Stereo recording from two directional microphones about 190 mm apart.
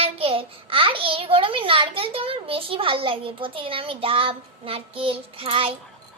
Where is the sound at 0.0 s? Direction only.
30° right (ahead or behind).